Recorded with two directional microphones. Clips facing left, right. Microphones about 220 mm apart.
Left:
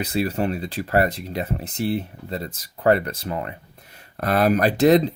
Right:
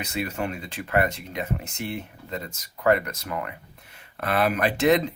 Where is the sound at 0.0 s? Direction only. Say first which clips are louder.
Left 6 dB; 35° left (ahead or behind).